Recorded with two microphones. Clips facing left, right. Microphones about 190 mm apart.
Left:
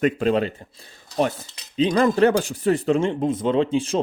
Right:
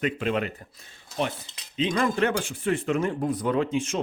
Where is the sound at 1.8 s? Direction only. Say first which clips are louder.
Left 7 dB; 35° left (ahead or behind).